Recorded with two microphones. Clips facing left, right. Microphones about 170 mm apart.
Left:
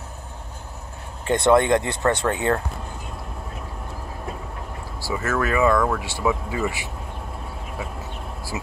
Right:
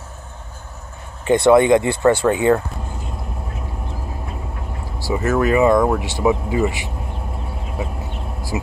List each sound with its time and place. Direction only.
1.2 s speech: 5° right (ahead or behind)
5.0 s speech: 20° right (ahead or behind)